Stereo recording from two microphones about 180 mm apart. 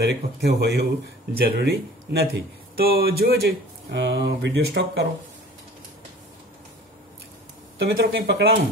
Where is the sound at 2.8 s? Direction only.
60° right (ahead or behind).